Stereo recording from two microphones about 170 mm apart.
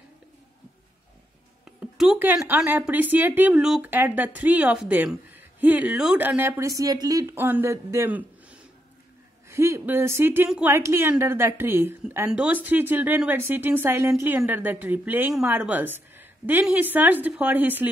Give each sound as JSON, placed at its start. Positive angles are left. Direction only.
{"t": 1.8, "sound": "a woman's voice", "side_deg": -5}